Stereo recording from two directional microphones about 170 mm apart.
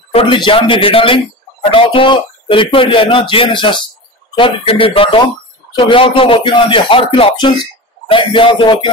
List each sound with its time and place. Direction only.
0.1 s speech: 30° left (ahead or behind)